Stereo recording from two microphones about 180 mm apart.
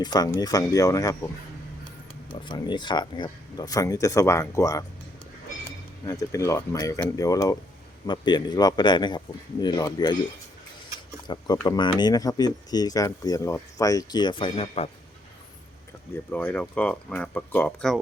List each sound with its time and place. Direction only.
0.0 s speech: 20° left (ahead or behind)
2.3 s speech: 25° left (ahead or behind)
6.1 s speech: 15° left (ahead or behind)
11.5 s speech: 20° left (ahead or behind)
16.3 s speech: 10° left (ahead or behind)